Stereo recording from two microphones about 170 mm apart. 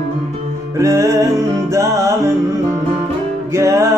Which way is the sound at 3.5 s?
15° right (ahead or behind).